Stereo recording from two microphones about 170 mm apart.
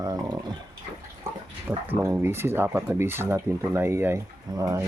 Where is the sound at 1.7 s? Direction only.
10° right (ahead or behind).